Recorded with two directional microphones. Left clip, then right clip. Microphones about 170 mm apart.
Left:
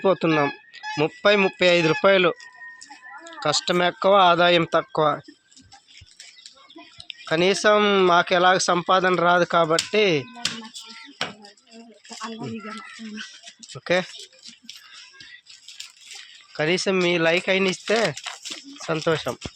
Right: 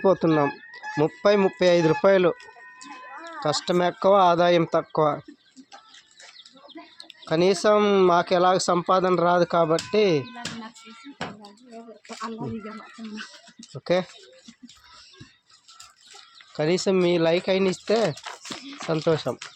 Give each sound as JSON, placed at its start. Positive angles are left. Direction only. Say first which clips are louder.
{"t": 0.0, "sound": "speech", "louder": "even", "side_deg": -15}
{"t": 3.4, "sound": "speech", "louder": "left 2 dB", "side_deg": -15}
{"t": 7.1, "sound": "speech", "louder": "left 1 dB", "side_deg": -5}
{"t": 13.7, "sound": "speech", "louder": "left 1 dB", "side_deg": -10}
{"t": 16.6, "sound": "speech", "louder": "left 1 dB", "side_deg": -10}